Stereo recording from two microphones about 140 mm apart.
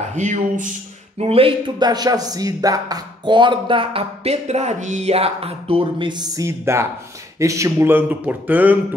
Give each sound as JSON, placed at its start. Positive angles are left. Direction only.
{"t": 0.1, "sound": "speech", "side_deg": -60}
{"t": 1.1, "sound": "speech", "side_deg": -45}
{"t": 1.8, "sound": "speech", "side_deg": -30}